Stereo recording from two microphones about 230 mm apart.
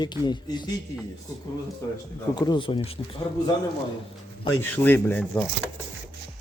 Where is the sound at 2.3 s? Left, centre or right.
Centre.